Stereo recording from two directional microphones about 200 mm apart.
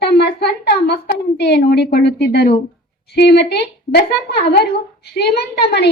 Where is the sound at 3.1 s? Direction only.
55° left (ahead or behind).